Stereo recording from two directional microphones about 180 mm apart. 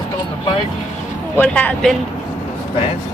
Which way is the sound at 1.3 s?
10° left (ahead or behind).